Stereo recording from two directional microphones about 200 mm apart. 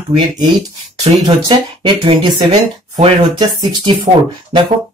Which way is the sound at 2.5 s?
35° right (ahead or behind).